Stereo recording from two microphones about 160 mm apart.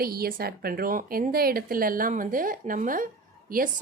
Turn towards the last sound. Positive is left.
turn(degrees=-60)  # may be behind; listen again after turning